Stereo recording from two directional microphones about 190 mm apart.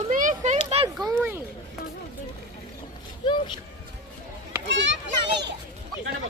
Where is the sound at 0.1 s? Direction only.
40° right (ahead or behind).